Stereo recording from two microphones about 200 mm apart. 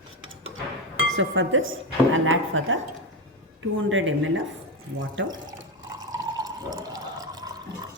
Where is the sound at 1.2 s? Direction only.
75° right (ahead or behind).